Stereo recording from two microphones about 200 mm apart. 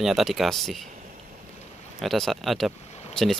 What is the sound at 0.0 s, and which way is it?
Speech, centre (ahead or behind).